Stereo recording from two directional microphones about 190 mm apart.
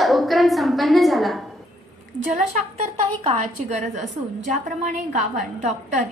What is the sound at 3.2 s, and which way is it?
A woman's voice, 35° right (ahead or behind).